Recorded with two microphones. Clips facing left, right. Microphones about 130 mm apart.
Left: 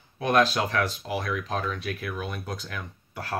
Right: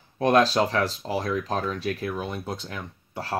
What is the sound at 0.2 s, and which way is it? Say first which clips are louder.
Speech: right 3 dB; 35° right (ahead or behind).